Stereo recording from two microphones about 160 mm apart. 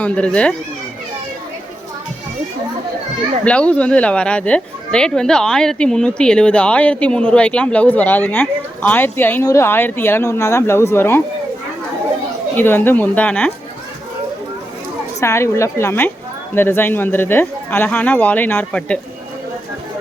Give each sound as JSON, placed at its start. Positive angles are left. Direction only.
{"t": 0.0, "sound": "speech", "side_deg": 5}
{"t": 3.4, "sound": "speech", "side_deg": 5}
{"t": 12.5, "sound": "speech", "side_deg": 15}
{"t": 15.2, "sound": "speech", "side_deg": 15}